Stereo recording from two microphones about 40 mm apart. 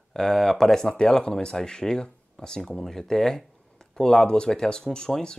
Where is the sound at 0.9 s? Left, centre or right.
Left.